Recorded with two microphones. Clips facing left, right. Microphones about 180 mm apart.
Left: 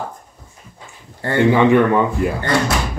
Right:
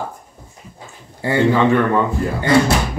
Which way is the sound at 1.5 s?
15° left (ahead or behind).